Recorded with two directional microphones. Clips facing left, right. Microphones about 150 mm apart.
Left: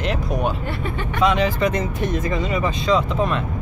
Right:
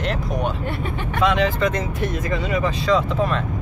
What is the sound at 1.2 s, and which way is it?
Speech, centre (ahead or behind).